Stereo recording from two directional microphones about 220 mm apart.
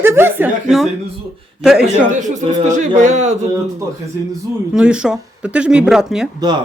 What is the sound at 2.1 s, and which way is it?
A man's voice, 35° right (ahead or behind).